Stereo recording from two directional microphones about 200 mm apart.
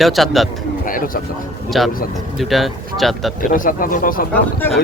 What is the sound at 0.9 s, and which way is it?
Speech, 45° left (ahead or behind).